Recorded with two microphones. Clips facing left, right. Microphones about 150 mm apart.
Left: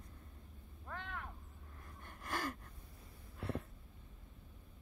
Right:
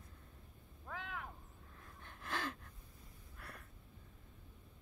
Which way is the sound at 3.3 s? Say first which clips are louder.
Left 14 dB; 25° left (ahead or behind).